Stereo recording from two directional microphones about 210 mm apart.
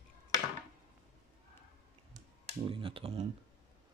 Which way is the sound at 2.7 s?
25° right (ahead or behind).